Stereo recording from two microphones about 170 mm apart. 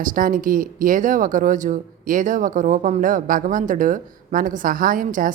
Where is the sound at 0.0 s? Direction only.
55° right (ahead or behind).